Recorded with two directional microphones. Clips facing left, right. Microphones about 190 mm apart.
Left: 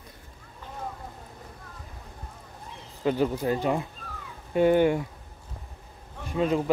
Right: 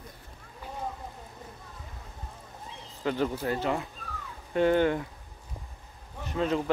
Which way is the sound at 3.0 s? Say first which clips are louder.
Left 4 dB; 15° left (ahead or behind).